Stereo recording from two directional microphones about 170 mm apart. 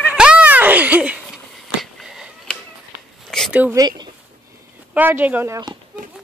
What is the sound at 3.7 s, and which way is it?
Speech, 25° right (ahead or behind).